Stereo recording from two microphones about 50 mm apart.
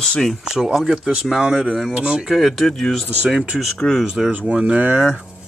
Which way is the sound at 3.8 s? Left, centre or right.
Centre.